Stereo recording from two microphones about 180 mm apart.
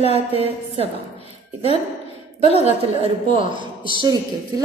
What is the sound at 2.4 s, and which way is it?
A woman's voice, 35° right (ahead or behind).